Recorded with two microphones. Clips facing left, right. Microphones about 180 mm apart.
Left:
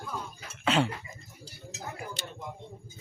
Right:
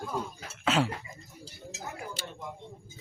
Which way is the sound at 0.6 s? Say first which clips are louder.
Left 1 dB; centre (ahead or behind).